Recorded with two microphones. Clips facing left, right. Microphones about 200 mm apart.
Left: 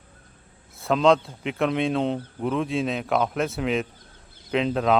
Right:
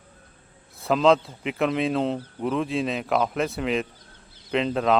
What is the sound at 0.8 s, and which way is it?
A man's voice, centre (ahead or behind).